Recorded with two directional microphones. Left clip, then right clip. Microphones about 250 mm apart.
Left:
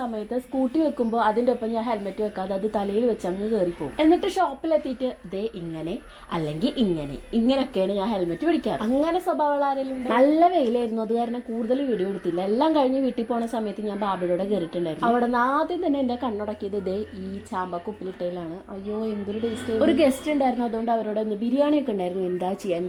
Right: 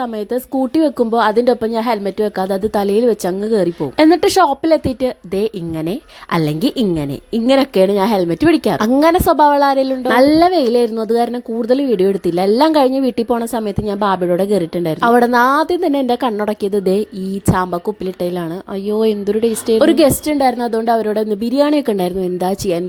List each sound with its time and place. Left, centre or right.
0.7 s a woman's voice: right
6.4 s a woman's voice: right
8.6 s a woman's voice: right
12.3 s a woman's voice: right
19.8 s a woman's voice: right